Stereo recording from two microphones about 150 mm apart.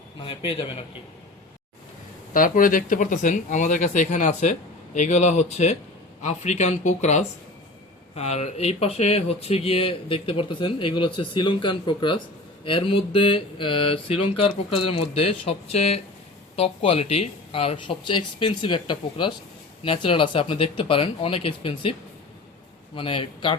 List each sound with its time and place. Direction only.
0.2 s speech: 35° left (ahead or behind)
2.3 s speech: 65° left (ahead or behind); by 21.9 s 35° left (ahead or behind)
23.0 s speech: 35° left (ahead or behind)